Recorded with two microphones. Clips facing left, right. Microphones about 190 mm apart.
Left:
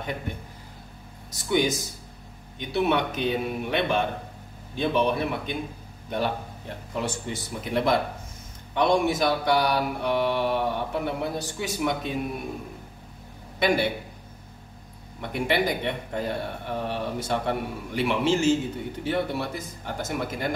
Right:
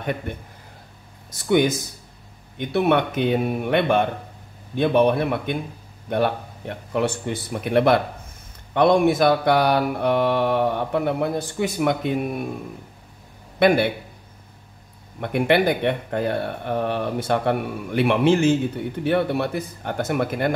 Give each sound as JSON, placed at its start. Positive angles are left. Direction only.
{"t": 1.3, "sound": "mantra", "side_deg": -55}
{"t": 13.6, "sound": "speech", "side_deg": -60}
{"t": 15.1, "sound": "mantra", "side_deg": -60}